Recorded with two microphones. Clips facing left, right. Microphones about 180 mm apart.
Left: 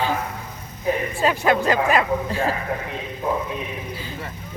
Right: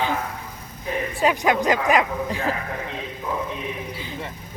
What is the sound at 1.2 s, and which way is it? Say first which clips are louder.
Speech: even; 15° right (ahead or behind).